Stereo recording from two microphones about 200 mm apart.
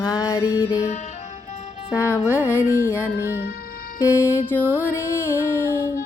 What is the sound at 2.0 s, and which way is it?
Music, 15° left (ahead or behind).